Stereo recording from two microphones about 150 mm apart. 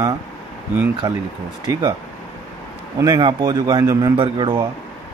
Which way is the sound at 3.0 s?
30° right (ahead or behind).